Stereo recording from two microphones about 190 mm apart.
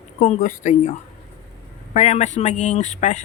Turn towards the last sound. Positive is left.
turn(degrees=40)  # may be behind; listen again after turning